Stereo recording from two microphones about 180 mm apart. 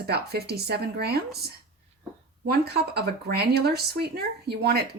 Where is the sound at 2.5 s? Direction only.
60° right (ahead or behind).